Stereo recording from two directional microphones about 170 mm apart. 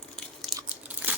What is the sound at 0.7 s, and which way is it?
Crunch, 10° right (ahead or behind).